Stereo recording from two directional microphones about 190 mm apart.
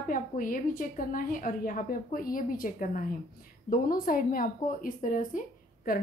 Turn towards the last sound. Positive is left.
turn(degrees=50)  # may be behind; listen again after turning